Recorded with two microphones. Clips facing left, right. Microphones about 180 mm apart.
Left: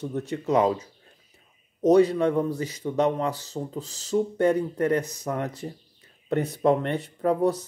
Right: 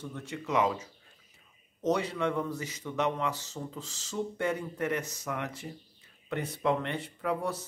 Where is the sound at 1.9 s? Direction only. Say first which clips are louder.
Left 11 dB; 35° left (ahead or behind).